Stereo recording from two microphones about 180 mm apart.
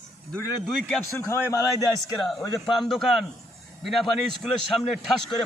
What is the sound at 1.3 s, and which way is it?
Speech, 15° left (ahead or behind).